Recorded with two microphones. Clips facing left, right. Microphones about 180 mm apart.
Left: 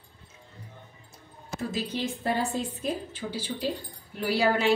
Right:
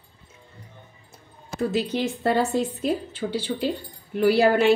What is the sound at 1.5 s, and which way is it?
A woman's voice, 70° right (ahead or behind).